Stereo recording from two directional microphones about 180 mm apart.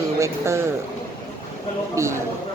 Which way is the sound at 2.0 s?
15° right (ahead or behind).